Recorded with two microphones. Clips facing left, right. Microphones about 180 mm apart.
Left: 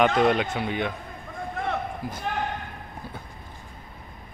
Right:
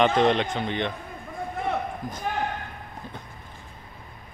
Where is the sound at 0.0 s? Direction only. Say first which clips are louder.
Even; 5° left (ahead or behind).